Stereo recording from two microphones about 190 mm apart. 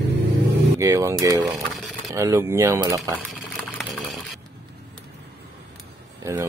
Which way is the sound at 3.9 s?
Centre (ahead or behind).